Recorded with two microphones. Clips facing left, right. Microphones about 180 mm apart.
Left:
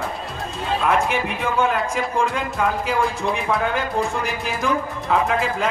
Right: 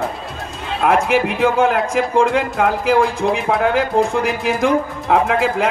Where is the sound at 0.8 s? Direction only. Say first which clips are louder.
Right 7 dB; 85° right; by 3.7 s 60° right (ahead or behind).